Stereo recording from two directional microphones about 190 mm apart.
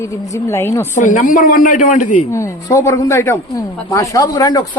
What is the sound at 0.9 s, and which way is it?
Speech, 40° left (ahead or behind).